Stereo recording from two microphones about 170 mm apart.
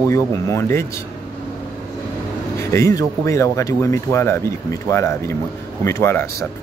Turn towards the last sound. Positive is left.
turn(degrees=15)  # may be behind; listen again after turning